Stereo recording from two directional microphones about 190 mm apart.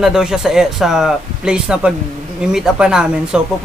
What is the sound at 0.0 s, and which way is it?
Speech, 5° right (ahead or behind).